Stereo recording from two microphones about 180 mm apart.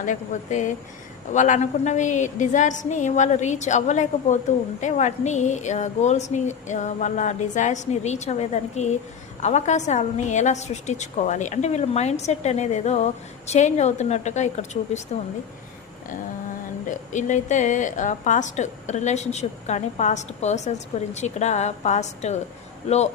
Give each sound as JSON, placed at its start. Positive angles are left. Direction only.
{"t": 0.0, "sound": "a woman's voice", "side_deg": 45}
{"t": 16.9, "sound": "a woman's voice", "side_deg": 45}